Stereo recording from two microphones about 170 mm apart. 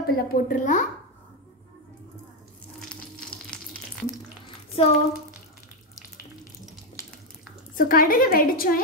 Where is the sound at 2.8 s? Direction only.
5° left (ahead or behind).